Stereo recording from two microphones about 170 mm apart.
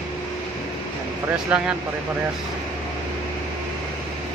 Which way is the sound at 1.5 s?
5° right (ahead or behind).